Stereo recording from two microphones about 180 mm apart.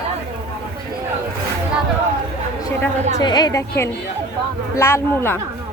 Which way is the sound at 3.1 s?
20° left (ahead or behind).